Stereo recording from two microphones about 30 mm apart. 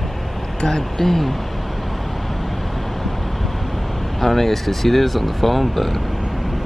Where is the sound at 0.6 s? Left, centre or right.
Centre.